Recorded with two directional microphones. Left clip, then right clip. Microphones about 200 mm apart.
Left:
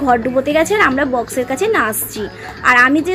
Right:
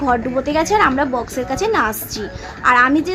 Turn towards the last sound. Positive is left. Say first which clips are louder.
# left 2 dB
turn(degrees=5)  # may be behind; listen again after turning